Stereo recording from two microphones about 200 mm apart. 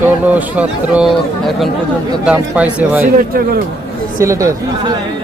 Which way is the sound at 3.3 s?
45° right (ahead or behind).